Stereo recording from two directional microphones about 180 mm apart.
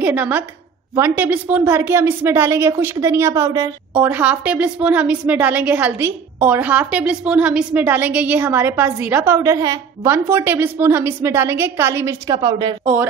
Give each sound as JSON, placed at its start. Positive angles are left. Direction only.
{"t": 0.0, "sound": "a woman's voice", "side_deg": -10}
{"t": 3.9, "sound": "a woman's voice", "side_deg": -10}
{"t": 12.4, "sound": "speech", "side_deg": -25}